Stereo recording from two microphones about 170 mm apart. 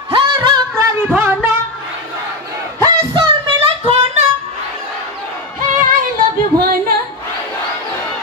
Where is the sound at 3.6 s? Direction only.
30° right (ahead or behind).